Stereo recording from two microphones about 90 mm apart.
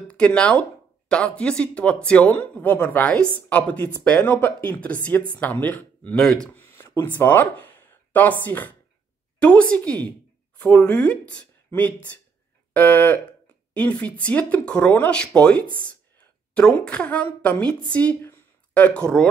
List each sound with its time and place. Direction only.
0.1 s speech: 10° left (ahead or behind)
6.2 s speech: 5° left (ahead or behind)
6.5 s a sound: 25° left (ahead or behind)
7.2 s a woman's voice: 20° left (ahead or behind)